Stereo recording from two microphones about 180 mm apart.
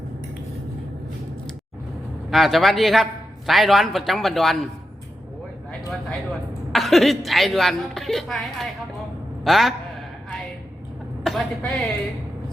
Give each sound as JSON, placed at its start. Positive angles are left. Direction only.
{"t": 2.3, "sound": "a man's voice", "side_deg": 0}
{"t": 6.7, "sound": "a man's voice", "side_deg": 0}
{"t": 11.2, "sound": "a man's voice", "side_deg": 0}